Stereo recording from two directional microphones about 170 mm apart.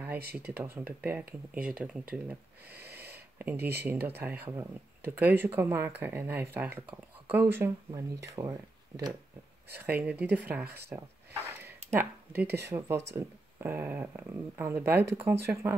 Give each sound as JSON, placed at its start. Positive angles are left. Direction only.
{"t": 0.4, "sound": "speech", "side_deg": -10}